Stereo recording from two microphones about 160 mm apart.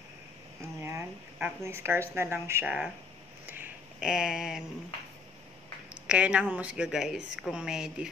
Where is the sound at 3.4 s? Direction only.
10° right (ahead or behind).